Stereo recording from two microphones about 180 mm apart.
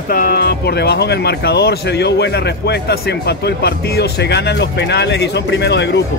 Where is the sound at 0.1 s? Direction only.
60° left (ahead or behind).